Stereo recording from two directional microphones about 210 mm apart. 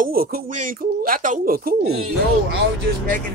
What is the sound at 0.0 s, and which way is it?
Speech, 45° right (ahead or behind).